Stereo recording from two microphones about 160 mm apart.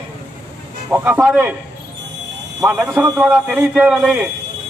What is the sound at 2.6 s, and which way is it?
A man's voice, 20° right (ahead or behind).